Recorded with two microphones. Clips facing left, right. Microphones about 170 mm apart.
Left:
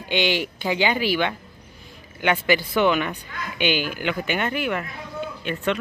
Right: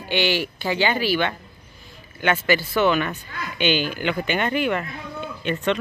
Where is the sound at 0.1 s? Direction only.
20° left (ahead or behind).